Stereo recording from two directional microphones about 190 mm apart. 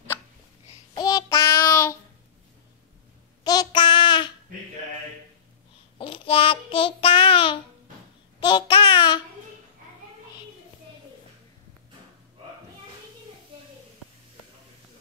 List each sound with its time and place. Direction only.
0.9 s child singing: 20° left (ahead or behind)
3.4 s child singing: 25° left (ahead or behind)
5.9 s child singing: 25° left (ahead or behind)
8.4 s babbling: 25° left (ahead or behind)